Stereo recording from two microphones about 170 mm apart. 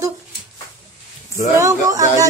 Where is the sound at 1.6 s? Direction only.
20° right (ahead or behind).